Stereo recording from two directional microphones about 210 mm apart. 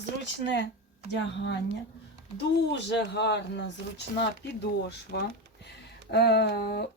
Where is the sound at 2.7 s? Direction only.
55° left (ahead or behind).